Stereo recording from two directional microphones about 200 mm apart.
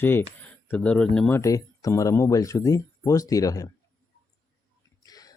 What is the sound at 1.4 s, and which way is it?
Speech, 15° left (ahead or behind).